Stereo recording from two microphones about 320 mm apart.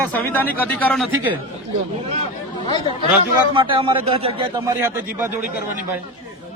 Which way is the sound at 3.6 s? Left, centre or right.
Centre.